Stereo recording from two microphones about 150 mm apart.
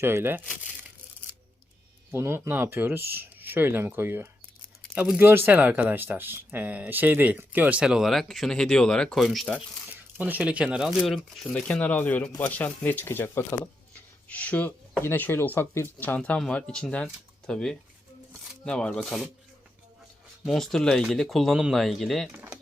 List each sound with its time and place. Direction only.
0.0 s speech: 15° right (ahead or behind)
2.0 s speech: 15° right (ahead or behind); by 9.6 s centre (ahead or behind)
10.2 s speech: 10° right (ahead or behind)
20.4 s speech: centre (ahead or behind)